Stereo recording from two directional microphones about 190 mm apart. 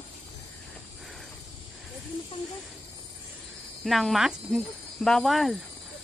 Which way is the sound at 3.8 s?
Centre (ahead or behind).